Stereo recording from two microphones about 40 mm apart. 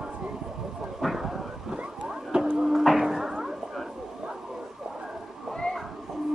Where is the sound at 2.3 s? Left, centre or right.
Right.